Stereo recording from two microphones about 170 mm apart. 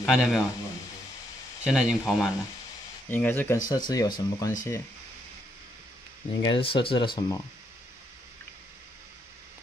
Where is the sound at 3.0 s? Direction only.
10° left (ahead or behind).